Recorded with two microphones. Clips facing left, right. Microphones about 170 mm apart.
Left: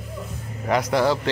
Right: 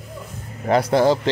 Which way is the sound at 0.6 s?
30° right (ahead or behind).